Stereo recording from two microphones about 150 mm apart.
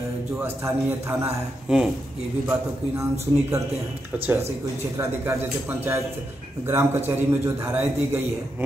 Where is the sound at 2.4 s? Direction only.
20° right (ahead or behind).